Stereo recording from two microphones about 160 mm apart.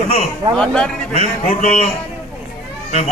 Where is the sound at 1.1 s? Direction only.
45° left (ahead or behind).